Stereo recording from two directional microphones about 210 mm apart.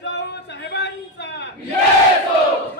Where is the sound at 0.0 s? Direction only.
55° left (ahead or behind).